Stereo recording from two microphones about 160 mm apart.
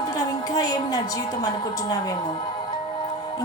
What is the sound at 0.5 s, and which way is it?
Speech, 25° left (ahead or behind).